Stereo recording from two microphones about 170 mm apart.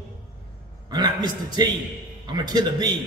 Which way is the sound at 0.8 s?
25° right (ahead or behind).